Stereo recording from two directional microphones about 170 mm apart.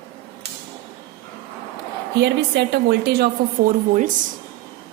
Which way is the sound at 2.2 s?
90° right.